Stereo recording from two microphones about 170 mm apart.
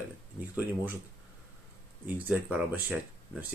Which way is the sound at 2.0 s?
10° right (ahead or behind).